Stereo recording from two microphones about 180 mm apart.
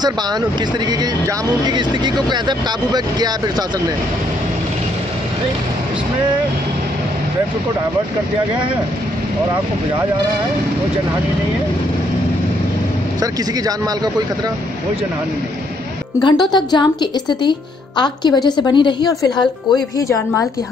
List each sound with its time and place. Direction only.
0.8 s speech: 25° right (ahead or behind)
13.2 s speech: 20° right (ahead or behind)
16.2 s speech: 25° left (ahead or behind)